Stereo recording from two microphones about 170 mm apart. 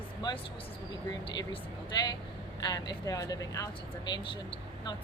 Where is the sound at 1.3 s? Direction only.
25° left (ahead or behind).